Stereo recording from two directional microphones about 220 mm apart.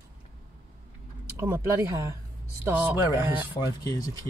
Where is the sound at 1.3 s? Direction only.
10° right (ahead or behind).